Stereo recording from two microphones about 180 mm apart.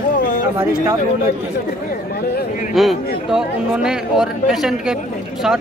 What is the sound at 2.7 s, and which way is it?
Speech, centre (ahead or behind).